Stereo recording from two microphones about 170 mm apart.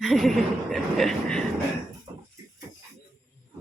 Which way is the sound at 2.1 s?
30° right (ahead or behind).